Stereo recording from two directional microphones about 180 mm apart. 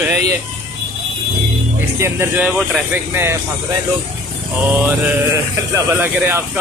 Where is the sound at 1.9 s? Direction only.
15° right (ahead or behind).